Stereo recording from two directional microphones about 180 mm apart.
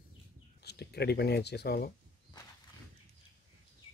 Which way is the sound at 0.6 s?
65° left (ahead or behind).